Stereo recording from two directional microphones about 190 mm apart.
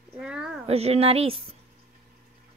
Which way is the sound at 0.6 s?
35° right (ahead or behind).